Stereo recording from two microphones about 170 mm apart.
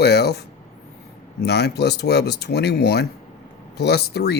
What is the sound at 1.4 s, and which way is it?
Speech, 75° left (ahead or behind).